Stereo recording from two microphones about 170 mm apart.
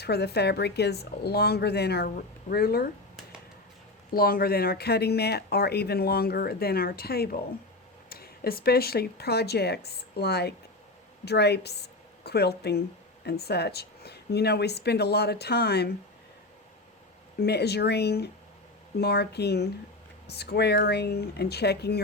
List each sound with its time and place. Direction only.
0.0 s speech: 75° left (ahead or behind)
4.1 s a woman's voice: 60° left (ahead or behind)
17.4 s speech: 75° left (ahead or behind)